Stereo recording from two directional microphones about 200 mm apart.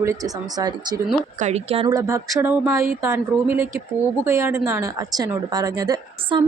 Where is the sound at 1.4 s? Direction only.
30° right (ahead or behind).